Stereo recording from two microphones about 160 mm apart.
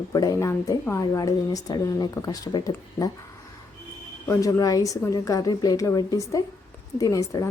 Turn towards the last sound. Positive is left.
turn(degrees=20)  # may be behind; listen again after turning